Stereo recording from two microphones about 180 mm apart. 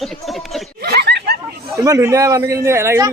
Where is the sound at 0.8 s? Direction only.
65° right (ahead or behind).